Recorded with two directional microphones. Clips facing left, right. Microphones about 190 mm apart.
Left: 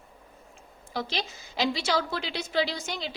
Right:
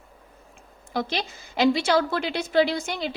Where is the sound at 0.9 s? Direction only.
55° right (ahead or behind).